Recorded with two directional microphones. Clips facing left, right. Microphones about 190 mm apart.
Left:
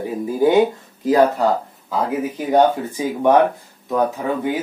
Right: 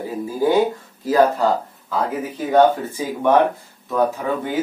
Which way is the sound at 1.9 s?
15° left (ahead or behind).